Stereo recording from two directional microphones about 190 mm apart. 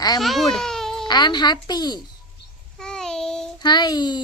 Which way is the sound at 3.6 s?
25° left (ahead or behind).